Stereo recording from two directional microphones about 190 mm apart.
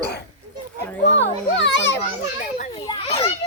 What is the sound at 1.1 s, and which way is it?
Children playing, 70° left (ahead or behind).